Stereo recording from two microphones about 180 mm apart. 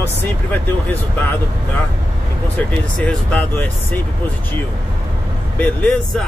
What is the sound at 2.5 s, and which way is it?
Speech, 10° left (ahead or behind).